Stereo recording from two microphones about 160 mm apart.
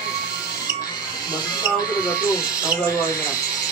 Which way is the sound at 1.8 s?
25° left (ahead or behind).